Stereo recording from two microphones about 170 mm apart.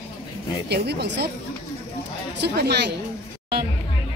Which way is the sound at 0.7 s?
75° right (ahead or behind).